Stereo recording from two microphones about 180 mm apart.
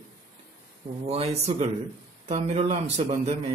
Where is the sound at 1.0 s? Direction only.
35° right (ahead or behind).